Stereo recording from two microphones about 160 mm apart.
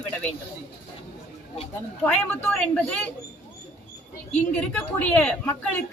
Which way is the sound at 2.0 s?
5° left (ahead or behind).